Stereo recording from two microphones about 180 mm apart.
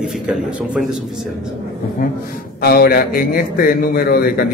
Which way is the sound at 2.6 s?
60° left (ahead or behind).